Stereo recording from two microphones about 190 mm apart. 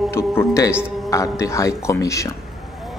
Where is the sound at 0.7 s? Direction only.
5° right (ahead or behind).